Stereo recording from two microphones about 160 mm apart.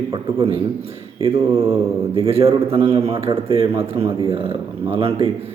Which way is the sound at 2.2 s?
40° right (ahead or behind).